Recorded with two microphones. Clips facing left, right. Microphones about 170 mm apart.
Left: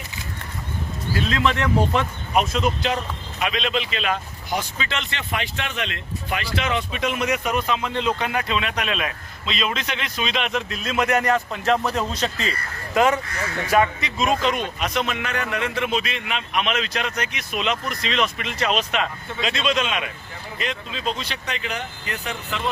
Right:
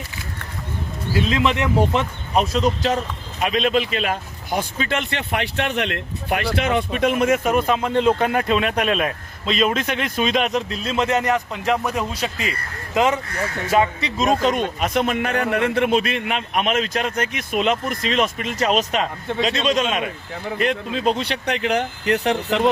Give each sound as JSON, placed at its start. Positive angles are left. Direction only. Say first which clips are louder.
{"t": 1.1, "sound": "a man's voice", "louder": "right 3 dB", "side_deg": -20}
{"t": 2.3, "sound": "a man's voice", "louder": "right 2 dB", "side_deg": -35}
{"t": 3.4, "sound": "a man's voice", "louder": "right 5 dB", "side_deg": -45}
{"t": 14.2, "sound": "a man's voice", "louder": "right 3 dB", "side_deg": -40}
{"t": 20.6, "sound": "speech", "louder": "right 7 dB", "side_deg": -55}